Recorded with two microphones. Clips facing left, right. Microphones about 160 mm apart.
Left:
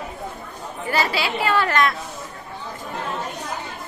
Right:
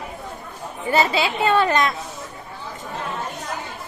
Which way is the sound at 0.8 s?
20° right (ahead or behind).